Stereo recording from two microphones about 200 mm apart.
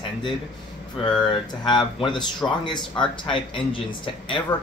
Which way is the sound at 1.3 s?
20° left (ahead or behind).